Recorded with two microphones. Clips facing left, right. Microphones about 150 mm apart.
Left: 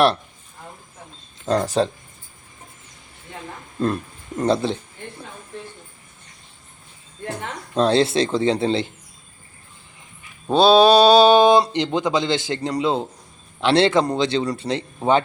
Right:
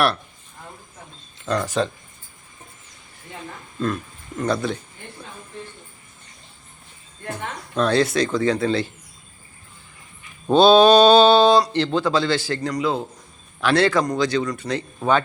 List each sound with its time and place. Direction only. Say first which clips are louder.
1.5 s speech: left 3 dB; 35° left (ahead or behind)
3.8 s speech: left 2 dB; 35° left (ahead or behind)
7.8 s a man's voice: left 2 dB; 25° left (ahead or behind)
10.4 s a man's voice: right 1 dB; 5° left (ahead or behind); by 15.2 s 25° left (ahead or behind)